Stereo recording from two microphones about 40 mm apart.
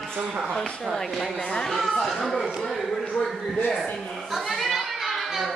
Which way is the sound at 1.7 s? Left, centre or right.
Centre.